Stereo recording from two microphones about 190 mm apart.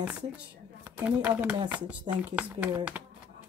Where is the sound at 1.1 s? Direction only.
5° right (ahead or behind).